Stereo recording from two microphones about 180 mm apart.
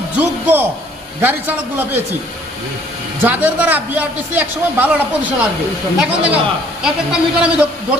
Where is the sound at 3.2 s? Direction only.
10° right (ahead or behind).